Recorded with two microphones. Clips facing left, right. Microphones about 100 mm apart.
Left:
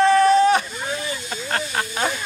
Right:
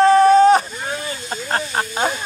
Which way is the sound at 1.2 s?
35° right (ahead or behind).